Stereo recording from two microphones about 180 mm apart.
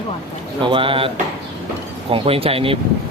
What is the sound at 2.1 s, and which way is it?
Speech, 30° right (ahead or behind).